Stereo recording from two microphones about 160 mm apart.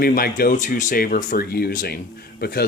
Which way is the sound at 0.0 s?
65° left (ahead or behind).